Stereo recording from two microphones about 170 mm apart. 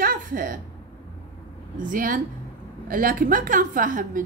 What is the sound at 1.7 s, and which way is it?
A woman's voice, 55° right (ahead or behind).